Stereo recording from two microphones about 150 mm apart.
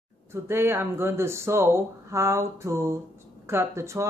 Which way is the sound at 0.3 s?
15° right (ahead or behind).